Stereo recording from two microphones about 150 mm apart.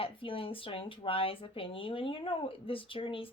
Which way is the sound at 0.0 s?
35° left (ahead or behind).